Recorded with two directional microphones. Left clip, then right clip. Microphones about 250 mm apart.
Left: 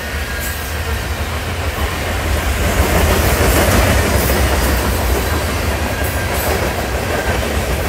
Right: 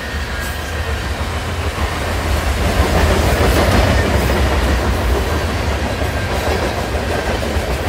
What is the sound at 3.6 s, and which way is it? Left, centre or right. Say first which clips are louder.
Music: left 1 dB; left.